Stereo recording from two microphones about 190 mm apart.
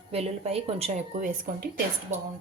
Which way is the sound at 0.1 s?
30° right (ahead or behind).